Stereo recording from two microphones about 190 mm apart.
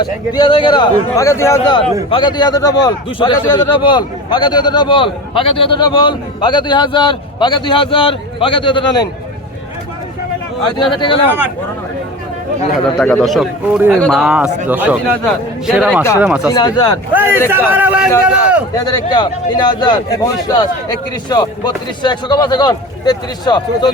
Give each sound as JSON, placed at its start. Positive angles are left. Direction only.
{"t": 0.0, "sound": "a man's voice", "side_deg": 25}
{"t": 10.8, "sound": "a man's voice", "side_deg": 25}
{"t": 13.0, "sound": "a man's voice", "side_deg": 5}
{"t": 16.6, "sound": "a man's voice", "side_deg": 20}
{"t": 17.2, "sound": "a man's voice", "side_deg": -10}
{"t": 18.7, "sound": "a man's voice", "side_deg": 20}